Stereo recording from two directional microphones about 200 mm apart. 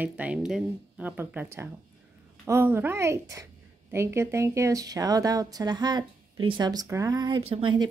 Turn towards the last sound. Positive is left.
turn(degrees=-25)  # may be behind; listen again after turning